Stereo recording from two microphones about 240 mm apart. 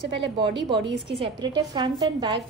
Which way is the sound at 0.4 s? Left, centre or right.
Centre.